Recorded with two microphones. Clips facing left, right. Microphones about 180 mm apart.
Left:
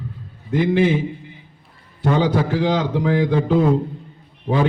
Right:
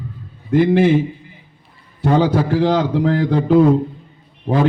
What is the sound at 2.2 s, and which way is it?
A man's voice, 45° right (ahead or behind).